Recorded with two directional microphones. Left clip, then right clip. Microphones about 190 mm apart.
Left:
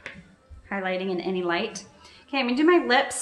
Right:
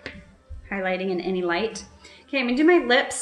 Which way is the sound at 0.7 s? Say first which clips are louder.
Right 2 dB; 10° left (ahead or behind).